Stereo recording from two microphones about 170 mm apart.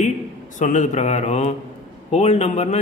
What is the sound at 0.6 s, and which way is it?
A man's voice, 45° left (ahead or behind).